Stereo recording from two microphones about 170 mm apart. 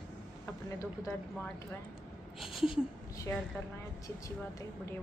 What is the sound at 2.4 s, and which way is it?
Speech, centre (ahead or behind).